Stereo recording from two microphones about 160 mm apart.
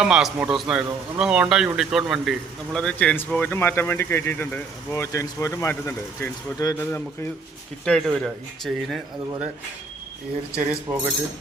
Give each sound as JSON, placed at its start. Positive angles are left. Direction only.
{"t": 0.0, "sound": "a man's voice", "side_deg": -5}
{"t": 7.9, "sound": "a man's voice", "side_deg": 5}
{"t": 10.6, "sound": "speech", "side_deg": -10}